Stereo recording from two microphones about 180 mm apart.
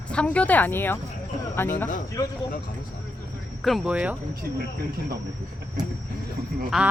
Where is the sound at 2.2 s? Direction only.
15° left (ahead or behind).